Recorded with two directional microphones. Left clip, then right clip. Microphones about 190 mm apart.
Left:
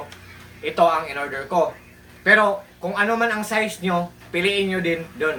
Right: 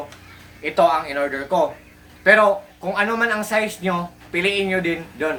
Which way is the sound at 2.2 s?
20° right (ahead or behind).